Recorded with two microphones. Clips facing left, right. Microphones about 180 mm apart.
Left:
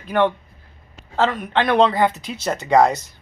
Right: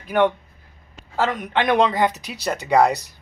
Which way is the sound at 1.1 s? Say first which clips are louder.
Left 2 dB; 10° right (ahead or behind).